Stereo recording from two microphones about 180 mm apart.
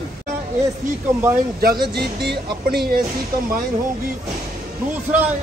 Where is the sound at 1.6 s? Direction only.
55° right (ahead or behind).